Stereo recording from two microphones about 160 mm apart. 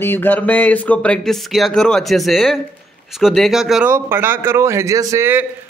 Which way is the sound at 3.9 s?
15° right (ahead or behind).